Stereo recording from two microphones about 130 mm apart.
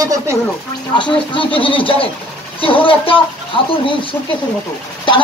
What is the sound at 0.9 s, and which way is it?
A child's voice, 40° left (ahead or behind).